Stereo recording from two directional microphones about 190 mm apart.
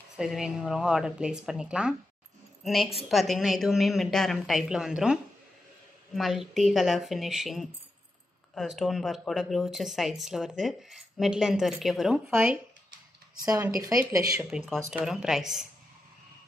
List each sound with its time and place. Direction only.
0.1 s a woman's voice: 5° right (ahead or behind)
13.4 s speech: 20° right (ahead or behind)
14.7 s a woman's voice: 5° right (ahead or behind)